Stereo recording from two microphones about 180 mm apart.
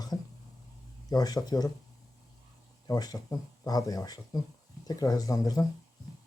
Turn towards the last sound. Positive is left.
turn(degrees=20)  # may be behind; listen again after turning